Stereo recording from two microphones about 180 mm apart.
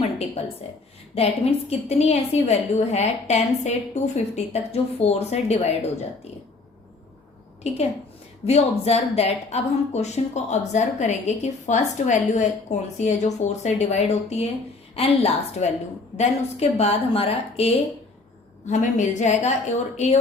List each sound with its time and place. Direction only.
0.0 s a sound: 35° left (ahead or behind)
1.1 s speech: 35° left (ahead or behind)
7.6 s speech: 35° left (ahead or behind)